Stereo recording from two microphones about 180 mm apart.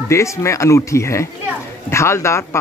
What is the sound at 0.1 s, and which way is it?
Speech, 15° left (ahead or behind).